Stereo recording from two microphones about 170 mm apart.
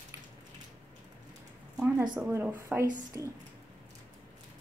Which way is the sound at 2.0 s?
15° right (ahead or behind).